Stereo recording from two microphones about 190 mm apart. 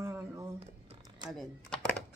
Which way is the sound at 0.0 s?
10° right (ahead or behind).